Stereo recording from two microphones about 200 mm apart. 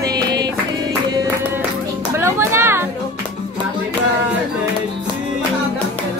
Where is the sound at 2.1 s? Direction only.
10° right (ahead or behind).